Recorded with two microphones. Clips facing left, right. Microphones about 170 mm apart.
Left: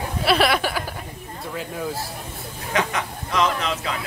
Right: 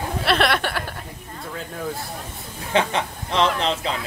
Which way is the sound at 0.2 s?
5° left (ahead or behind).